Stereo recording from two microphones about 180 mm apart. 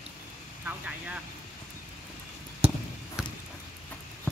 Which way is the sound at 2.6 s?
35° right (ahead or behind).